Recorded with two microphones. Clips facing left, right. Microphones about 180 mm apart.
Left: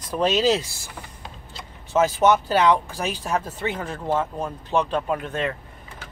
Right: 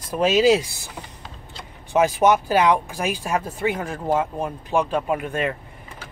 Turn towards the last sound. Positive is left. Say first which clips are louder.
# right 2 dB
turn(degrees=-10)  # may be behind; listen again after turning